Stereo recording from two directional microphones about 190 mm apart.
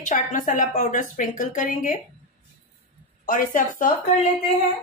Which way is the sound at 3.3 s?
45° left (ahead or behind).